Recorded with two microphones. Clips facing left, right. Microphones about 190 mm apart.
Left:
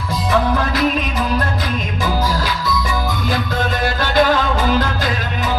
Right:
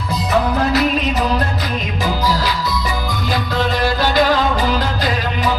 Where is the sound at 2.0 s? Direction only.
50° left (ahead or behind).